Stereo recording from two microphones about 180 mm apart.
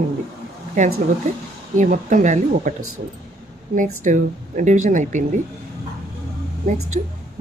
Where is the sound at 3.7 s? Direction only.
45° right (ahead or behind).